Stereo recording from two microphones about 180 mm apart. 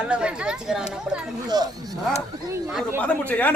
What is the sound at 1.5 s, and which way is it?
Speech, 20° right (ahead or behind).